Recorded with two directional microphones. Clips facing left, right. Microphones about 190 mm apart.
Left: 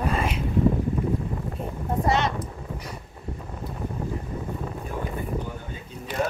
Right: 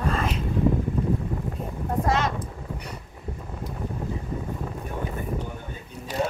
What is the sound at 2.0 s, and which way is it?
Speech, centre (ahead or behind).